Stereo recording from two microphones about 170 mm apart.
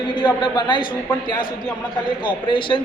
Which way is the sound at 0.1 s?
25° left (ahead or behind).